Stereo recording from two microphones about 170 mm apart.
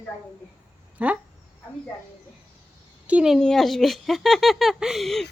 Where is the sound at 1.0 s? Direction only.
10° right (ahead or behind).